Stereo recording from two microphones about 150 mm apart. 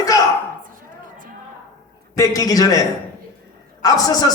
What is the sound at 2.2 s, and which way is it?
Speech, 25° left (ahead or behind).